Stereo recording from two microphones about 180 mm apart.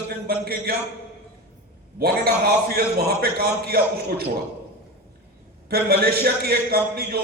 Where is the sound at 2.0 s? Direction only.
60° right (ahead or behind).